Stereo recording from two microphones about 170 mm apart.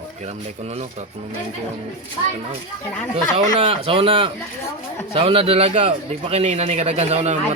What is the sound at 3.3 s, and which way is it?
A man's voice, 35° right (ahead or behind).